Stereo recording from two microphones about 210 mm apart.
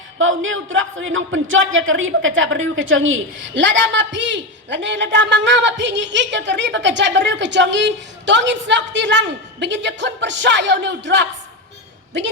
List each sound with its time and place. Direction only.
0.2 s speech: 70° right (ahead or behind)